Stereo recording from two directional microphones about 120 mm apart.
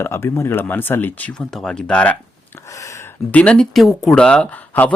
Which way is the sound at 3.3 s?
10° left (ahead or behind).